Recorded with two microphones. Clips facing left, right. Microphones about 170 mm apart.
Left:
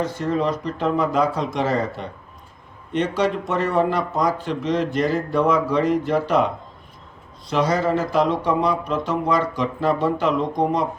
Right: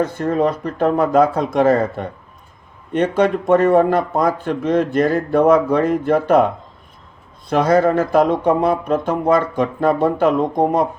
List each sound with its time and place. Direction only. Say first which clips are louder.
0.0 s speech: right 5 dB; 55° right (ahead or behind)
7.5 s speech: right 6 dB; 55° right (ahead or behind)